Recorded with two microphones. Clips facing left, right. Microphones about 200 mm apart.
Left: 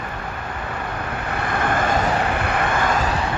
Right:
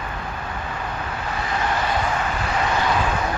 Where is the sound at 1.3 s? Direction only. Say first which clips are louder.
Left 3 dB; 55° left (ahead or behind).